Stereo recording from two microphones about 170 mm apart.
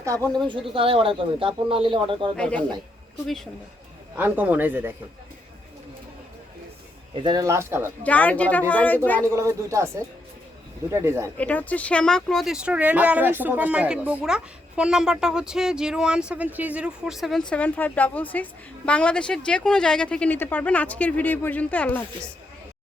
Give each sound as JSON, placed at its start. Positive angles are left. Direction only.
{"t": 0.0, "sound": "speech", "side_deg": -20}
{"t": 0.7, "sound": "speech", "side_deg": -30}
{"t": 2.3, "sound": "speech", "side_deg": 5}
{"t": 4.2, "sound": "speech", "side_deg": -10}
{"t": 7.1, "sound": "speech", "side_deg": -30}
{"t": 8.0, "sound": "speech", "side_deg": 10}
{"t": 9.3, "sound": "speech", "side_deg": -15}
{"t": 11.0, "sound": "speech", "side_deg": -15}
{"t": 11.3, "sound": "speech", "side_deg": 10}